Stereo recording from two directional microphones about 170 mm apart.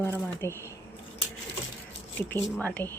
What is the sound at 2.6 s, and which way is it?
Speech, 10° left (ahead or behind).